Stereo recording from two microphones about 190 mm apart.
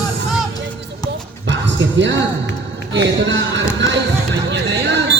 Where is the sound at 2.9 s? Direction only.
80° right.